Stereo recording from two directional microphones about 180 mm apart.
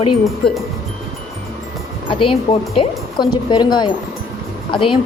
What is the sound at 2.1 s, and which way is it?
Speech, 30° left (ahead or behind).